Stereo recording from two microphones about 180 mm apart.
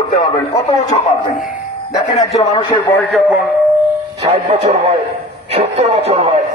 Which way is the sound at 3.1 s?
Centre (ahead or behind).